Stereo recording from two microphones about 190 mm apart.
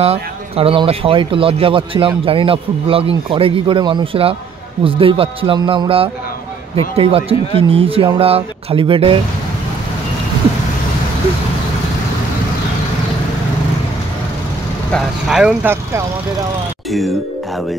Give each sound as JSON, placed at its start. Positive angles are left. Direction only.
{"t": 0.0, "sound": "speech", "side_deg": -30}
{"t": 14.9, "sound": "speech", "side_deg": 0}